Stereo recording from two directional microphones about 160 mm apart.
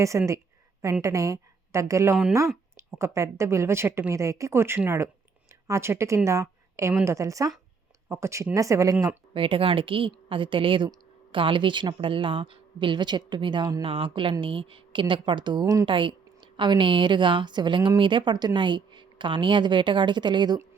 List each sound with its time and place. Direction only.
0.0 s a woman's voice: 20° right (ahead or behind)
9.3 s a woman's voice: 35° right (ahead or behind)
15.9 s a woman's voice: 30° right (ahead or behind)